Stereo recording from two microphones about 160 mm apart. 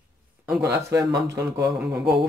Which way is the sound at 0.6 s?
20° right (ahead or behind).